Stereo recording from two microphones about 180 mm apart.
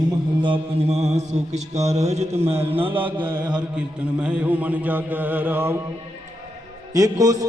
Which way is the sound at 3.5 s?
5° right (ahead or behind).